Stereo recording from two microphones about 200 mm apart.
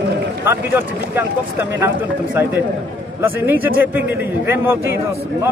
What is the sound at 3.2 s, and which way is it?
A man's voice, 10° right (ahead or behind).